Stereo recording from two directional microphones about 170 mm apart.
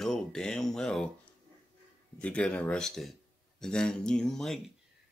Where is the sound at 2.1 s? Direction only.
5° left (ahead or behind).